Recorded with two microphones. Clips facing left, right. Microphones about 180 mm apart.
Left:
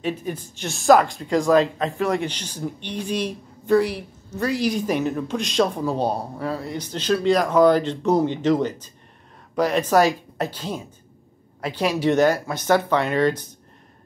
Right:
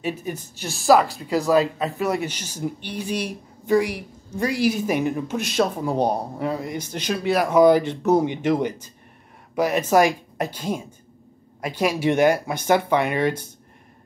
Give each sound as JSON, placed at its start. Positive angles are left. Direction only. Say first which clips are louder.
{"t": 0.0, "sound": "speech", "louder": "left 1 dB", "side_deg": -10}
{"t": 5.9, "sound": "speech", "louder": "right 1 dB", "side_deg": -15}